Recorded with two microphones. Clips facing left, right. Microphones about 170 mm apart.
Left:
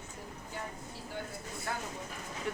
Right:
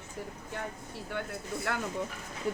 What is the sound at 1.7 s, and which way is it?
Speech, 75° right (ahead or behind).